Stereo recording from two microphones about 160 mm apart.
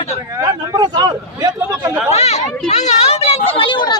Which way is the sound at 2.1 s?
45° left (ahead or behind).